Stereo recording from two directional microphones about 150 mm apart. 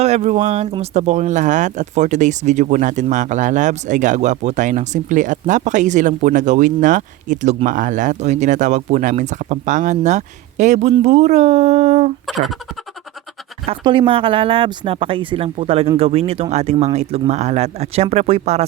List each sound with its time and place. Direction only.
0.0 s speech: 50° right (ahead or behind)
12.2 s speech: centre (ahead or behind)
13.7 s speech: 35° right (ahead or behind)